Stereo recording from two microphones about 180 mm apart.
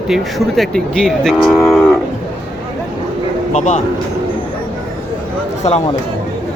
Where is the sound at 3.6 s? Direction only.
40° left (ahead or behind).